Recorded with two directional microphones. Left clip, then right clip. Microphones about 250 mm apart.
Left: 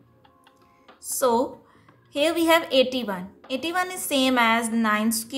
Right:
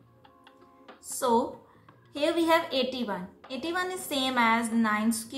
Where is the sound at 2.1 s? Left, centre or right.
Left.